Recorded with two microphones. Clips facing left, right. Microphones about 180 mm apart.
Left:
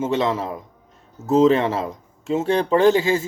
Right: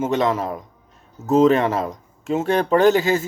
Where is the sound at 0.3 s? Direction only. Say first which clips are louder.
Right 2 dB; 50° right (ahead or behind).